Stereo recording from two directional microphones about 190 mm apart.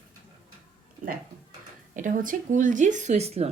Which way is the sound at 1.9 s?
45° right (ahead or behind).